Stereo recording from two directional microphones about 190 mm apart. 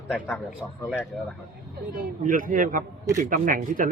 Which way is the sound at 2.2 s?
45° right (ahead or behind).